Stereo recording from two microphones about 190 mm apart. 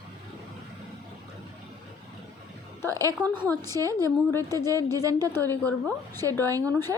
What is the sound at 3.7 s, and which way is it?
Speech, 15° left (ahead or behind).